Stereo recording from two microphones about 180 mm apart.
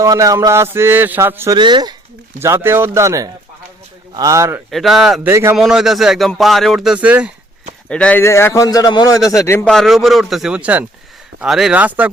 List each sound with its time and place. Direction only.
0.0 s a man's voice: 20° right (ahead or behind)
1.5 s speech: 25° right (ahead or behind)
2.4 s a man's voice: 15° right (ahead or behind)
4.7 s speech: centre (ahead or behind)
5.3 s a man's voice: 15° right (ahead or behind)
5.5 s speech: 5° right (ahead or behind)
7.9 s a man's voice: 5° left (ahead or behind)
9.6 s a man's voice: centre (ahead or behind)